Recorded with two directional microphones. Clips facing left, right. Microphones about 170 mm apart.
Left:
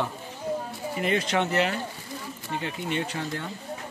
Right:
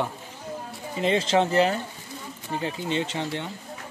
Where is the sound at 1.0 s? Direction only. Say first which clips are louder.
Right 4 dB; 25° right (ahead or behind).